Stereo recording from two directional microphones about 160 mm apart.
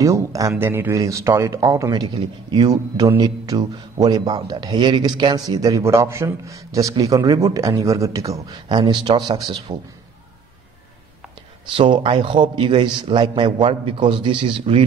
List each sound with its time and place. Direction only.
0.0 s a man's voice: 20° right (ahead or behind)
11.7 s a man's voice: 30° right (ahead or behind)